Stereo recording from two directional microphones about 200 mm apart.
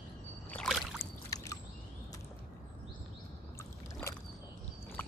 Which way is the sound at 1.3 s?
15° left (ahead or behind).